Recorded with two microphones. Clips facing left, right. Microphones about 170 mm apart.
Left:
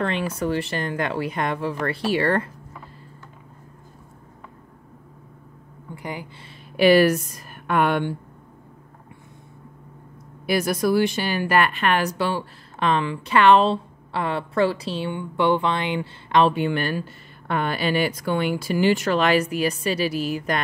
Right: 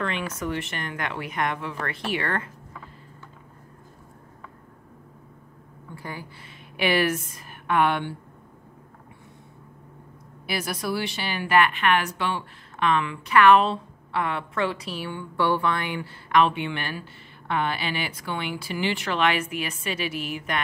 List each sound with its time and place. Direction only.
0.0 s a woman's voice: 35° left (ahead or behind)
5.9 s a sound: 20° left (ahead or behind)
6.8 s a woman's voice: 40° left (ahead or behind)
10.4 s a woman's voice: 45° left (ahead or behind)